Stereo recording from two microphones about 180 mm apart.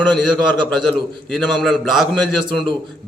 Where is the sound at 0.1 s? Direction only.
5° left (ahead or behind).